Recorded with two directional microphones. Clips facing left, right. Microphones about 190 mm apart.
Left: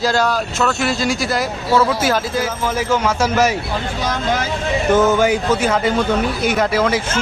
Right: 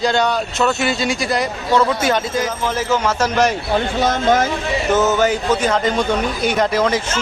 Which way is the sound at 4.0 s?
50° right (ahead or behind).